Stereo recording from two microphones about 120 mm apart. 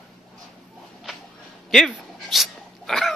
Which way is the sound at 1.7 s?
Centre (ahead or behind).